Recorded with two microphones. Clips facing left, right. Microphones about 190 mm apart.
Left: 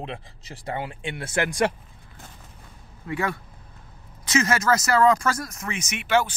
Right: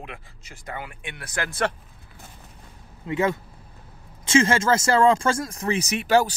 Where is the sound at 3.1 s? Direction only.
20° right (ahead or behind); by 6.3 s 40° right (ahead or behind).